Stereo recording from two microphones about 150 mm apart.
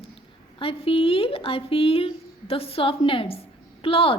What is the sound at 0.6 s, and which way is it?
A woman's voice, 35° left (ahead or behind).